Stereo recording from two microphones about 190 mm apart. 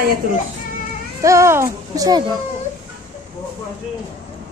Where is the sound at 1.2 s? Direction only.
15° right (ahead or behind).